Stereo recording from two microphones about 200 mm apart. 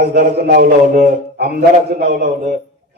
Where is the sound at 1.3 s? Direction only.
55° right (ahead or behind).